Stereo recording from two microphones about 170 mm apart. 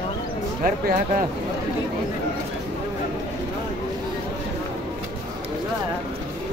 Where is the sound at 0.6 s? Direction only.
60° right (ahead or behind).